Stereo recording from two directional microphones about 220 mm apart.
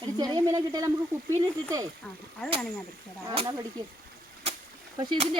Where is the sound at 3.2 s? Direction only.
15° right (ahead or behind).